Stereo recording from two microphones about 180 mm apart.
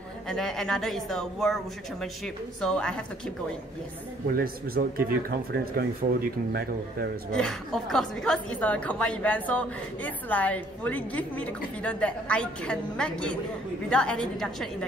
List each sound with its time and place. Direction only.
0.3 s speech: centre (ahead or behind)
4.3 s speech: 55° right (ahead or behind)
7.3 s a woman's voice: 5° left (ahead or behind)